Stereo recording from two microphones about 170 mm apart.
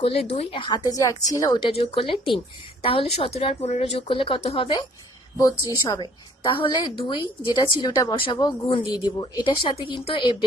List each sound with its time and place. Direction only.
0.0 s speech: 35° left (ahead or behind)
0.9 s a woman's voice: 20° left (ahead or behind)